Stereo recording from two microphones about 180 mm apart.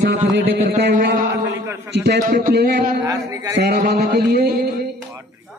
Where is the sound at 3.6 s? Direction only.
60° right (ahead or behind).